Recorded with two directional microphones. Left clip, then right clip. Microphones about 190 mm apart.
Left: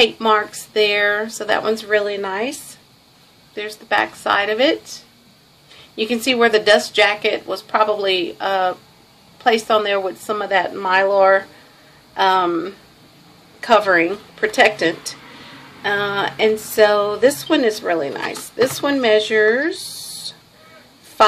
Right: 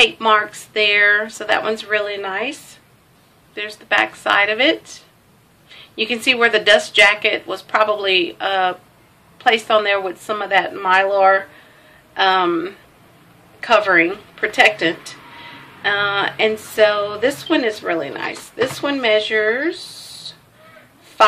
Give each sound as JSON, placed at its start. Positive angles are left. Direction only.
{"t": 0.0, "sound": "speech", "side_deg": 25}
{"t": 3.5, "sound": "speech", "side_deg": 25}
{"t": 5.9, "sound": "speech", "side_deg": 25}